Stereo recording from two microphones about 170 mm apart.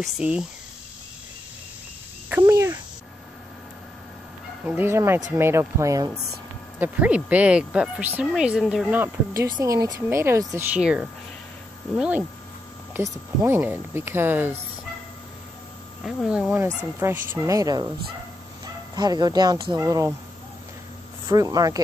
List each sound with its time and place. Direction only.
0.0 s speech: 5° right (ahead or behind)
2.2 s cricket: 15° right (ahead or behind)
4.6 s speech: 10° right (ahead or behind)
10.8 s speech: 5° right (ahead or behind)
16.0 s speech: centre (ahead or behind); by 17.8 s 20° right (ahead or behind)
18.9 s speech: 25° right (ahead or behind)
21.3 s speech: 20° right (ahead or behind)